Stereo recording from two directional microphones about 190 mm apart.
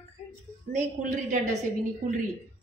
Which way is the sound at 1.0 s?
40° right (ahead or behind).